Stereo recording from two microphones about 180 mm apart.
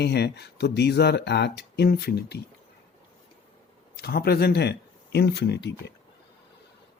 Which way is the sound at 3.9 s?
60° left (ahead or behind).